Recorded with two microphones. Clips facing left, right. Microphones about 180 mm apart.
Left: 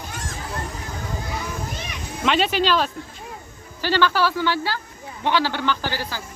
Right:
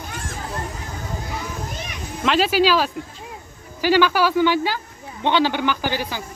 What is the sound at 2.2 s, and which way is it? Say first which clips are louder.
Speech: right 3 dB; centre (ahead or behind).